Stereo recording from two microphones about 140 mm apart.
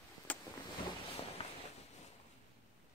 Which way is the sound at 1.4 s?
45° left (ahead or behind).